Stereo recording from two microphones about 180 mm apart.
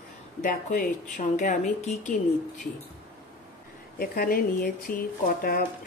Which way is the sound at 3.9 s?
55° left (ahead or behind).